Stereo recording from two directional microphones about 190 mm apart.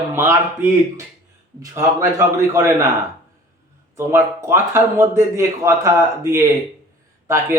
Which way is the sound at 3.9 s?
15° right (ahead or behind).